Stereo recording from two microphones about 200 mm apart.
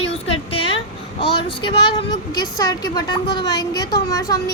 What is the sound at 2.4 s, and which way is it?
Speech, 20° left (ahead or behind).